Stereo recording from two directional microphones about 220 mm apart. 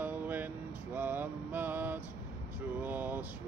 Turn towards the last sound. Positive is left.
turn(degrees=-10)  # may be behind; listen again after turning